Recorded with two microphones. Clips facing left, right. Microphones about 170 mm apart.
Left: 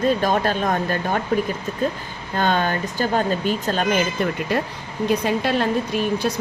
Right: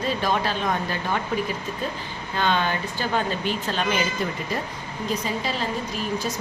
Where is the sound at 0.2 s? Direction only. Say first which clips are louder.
Left 4 dB; 50° left (ahead or behind).